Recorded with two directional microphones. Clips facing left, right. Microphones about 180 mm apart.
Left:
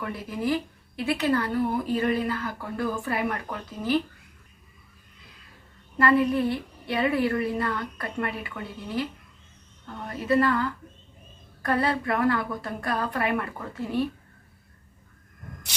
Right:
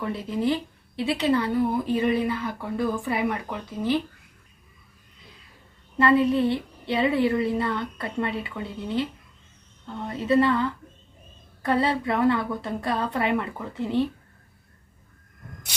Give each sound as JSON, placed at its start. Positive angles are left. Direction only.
{"t": 0.0, "sound": "a woman's voice", "side_deg": -25}
{"t": 5.9, "sound": "a woman's voice", "side_deg": -25}
{"t": 10.0, "sound": "a woman's voice", "side_deg": -25}